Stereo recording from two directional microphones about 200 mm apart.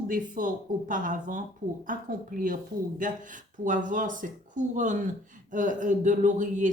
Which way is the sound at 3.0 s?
40° right (ahead or behind).